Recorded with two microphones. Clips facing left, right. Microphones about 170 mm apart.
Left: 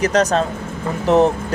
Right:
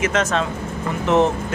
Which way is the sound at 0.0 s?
40° left (ahead or behind).